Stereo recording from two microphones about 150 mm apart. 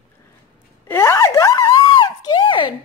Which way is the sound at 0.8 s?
15° left (ahead or behind).